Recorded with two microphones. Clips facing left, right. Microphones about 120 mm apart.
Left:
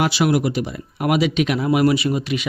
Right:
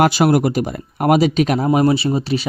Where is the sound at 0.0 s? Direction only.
45° right (ahead or behind).